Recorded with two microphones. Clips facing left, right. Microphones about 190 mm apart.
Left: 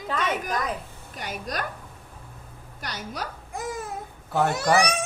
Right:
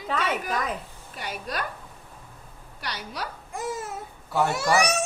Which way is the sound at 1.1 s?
45° left (ahead or behind).